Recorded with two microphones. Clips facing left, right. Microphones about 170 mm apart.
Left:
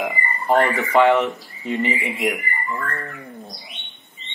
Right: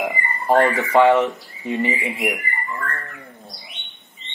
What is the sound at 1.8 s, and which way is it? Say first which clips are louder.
Speech: right 1 dB; 20° left (ahead or behind).